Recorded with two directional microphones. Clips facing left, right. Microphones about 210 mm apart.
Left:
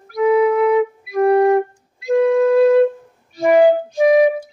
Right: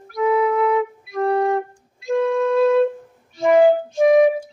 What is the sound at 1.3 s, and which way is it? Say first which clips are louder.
Flute: left 7 dB; centre (ahead or behind).